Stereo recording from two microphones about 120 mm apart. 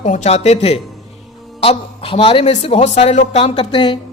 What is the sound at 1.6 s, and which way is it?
Speech, 50° left (ahead or behind).